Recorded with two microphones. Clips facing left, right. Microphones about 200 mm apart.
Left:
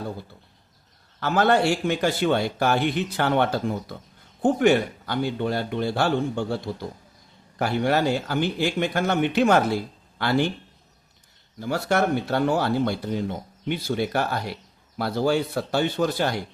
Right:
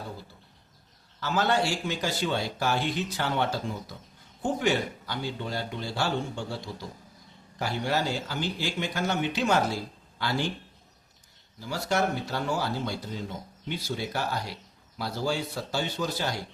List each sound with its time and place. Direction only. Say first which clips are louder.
1.2 s a man's voice: left 6 dB; 55° left (ahead or behind)
11.6 s a man's voice: left 5 dB; 60° left (ahead or behind)